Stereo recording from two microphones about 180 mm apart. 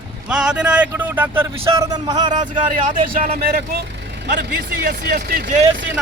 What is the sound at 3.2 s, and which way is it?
Speech, 55° right (ahead or behind).